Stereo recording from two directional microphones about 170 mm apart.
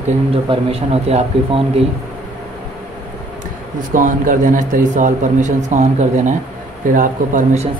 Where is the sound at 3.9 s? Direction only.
50° right (ahead or behind).